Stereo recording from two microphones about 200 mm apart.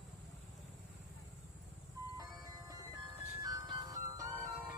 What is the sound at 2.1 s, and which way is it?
Music, 15° right (ahead or behind).